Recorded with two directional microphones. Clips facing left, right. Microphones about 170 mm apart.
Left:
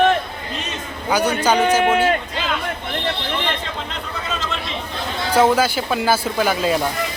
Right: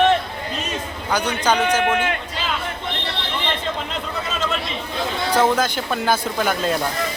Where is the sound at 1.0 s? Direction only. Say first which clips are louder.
Left 3 dB; 10° left (ahead or behind).